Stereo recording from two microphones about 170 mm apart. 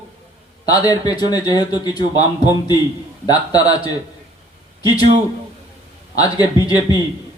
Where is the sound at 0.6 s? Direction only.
20° left (ahead or behind).